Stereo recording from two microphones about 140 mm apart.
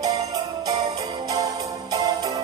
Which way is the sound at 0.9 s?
25° right (ahead or behind).